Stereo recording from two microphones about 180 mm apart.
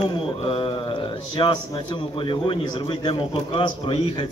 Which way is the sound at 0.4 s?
30° left (ahead or behind).